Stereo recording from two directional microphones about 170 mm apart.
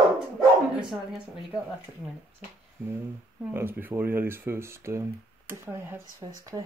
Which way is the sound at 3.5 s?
10° right (ahead or behind).